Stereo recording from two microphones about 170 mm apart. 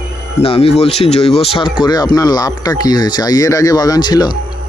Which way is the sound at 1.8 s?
25° left (ahead or behind).